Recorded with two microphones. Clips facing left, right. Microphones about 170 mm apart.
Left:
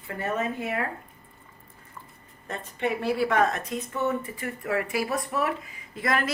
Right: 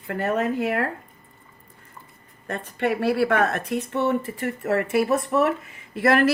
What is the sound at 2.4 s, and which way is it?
Speech, 65° right (ahead or behind).